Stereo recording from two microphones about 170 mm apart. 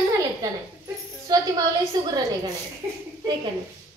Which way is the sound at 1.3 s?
25° right (ahead or behind).